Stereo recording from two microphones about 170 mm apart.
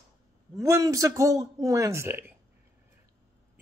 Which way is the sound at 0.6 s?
20° right (ahead or behind).